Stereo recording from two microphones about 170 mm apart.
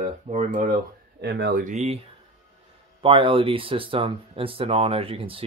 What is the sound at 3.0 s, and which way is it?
Speech, 30° right (ahead or behind).